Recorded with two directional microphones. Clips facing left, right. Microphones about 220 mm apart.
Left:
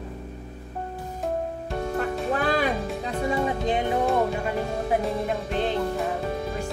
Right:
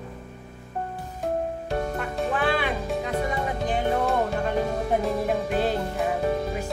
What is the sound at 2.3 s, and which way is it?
Music, 40° left (ahead or behind).